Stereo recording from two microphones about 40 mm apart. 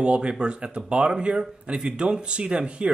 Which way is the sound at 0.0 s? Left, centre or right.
Right.